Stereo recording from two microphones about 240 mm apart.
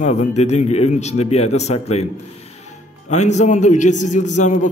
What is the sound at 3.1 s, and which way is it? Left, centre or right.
Speech, left.